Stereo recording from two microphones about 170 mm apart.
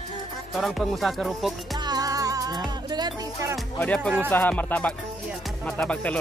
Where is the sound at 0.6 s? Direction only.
Centre (ahead or behind).